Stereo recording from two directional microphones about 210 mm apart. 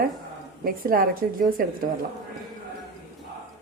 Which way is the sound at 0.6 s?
45° right (ahead or behind).